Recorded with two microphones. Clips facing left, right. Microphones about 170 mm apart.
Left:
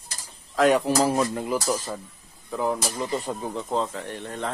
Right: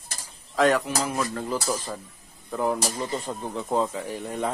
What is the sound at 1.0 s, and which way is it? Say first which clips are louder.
Speech: left 5 dB; 30° left (ahead or behind).